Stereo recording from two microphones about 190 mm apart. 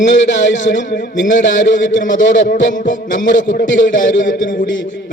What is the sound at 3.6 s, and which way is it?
Speech, 75° left (ahead or behind).